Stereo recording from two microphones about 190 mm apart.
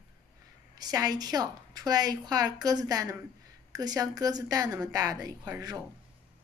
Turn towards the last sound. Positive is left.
turn(degrees=-20)  # may be behind; listen again after turning